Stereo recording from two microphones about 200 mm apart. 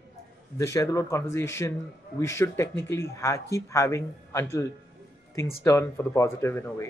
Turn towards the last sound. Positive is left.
turn(degrees=15)  # may be behind; listen again after turning